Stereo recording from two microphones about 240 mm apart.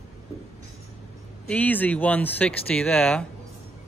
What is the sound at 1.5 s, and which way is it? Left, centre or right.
Speech, centre.